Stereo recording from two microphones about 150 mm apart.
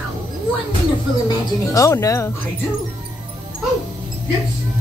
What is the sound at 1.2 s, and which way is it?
Music, 25° left (ahead or behind).